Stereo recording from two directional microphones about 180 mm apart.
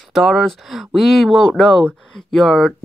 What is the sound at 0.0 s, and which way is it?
Speech, centre (ahead or behind).